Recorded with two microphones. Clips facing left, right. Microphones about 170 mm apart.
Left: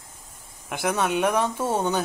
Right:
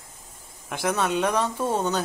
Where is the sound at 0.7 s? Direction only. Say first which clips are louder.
Even; 5° left (ahead or behind).